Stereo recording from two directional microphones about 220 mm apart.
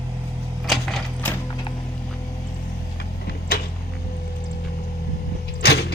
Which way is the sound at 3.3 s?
45° left (ahead or behind).